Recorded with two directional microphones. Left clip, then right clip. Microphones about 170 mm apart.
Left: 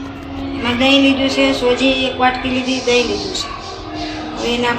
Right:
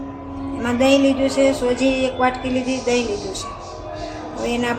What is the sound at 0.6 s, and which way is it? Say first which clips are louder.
A woman's voice: left 3 dB; 45° right (ahead or behind).